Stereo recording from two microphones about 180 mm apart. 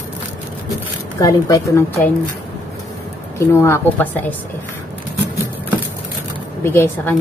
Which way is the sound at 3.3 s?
15° left (ahead or behind).